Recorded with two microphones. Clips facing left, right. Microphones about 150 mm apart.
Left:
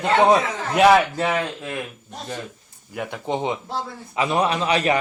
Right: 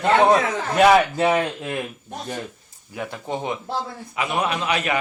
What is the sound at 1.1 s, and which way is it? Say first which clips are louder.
Speech: right 3 dB; 15° right (ahead or behind).